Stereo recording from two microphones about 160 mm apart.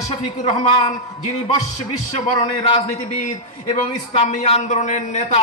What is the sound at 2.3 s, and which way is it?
A man's voice, 35° left (ahead or behind).